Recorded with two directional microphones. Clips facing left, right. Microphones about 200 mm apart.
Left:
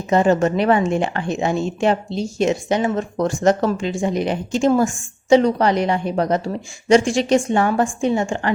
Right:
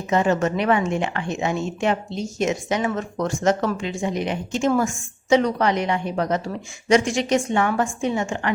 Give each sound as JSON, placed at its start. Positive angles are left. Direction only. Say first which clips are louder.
{"t": 0.1, "sound": "a woman's voice", "louder": "left 4 dB", "side_deg": 35}